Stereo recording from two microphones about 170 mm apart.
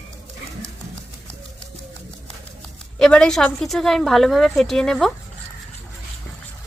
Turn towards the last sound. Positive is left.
turn(degrees=0)  # may be behind; listen again after turning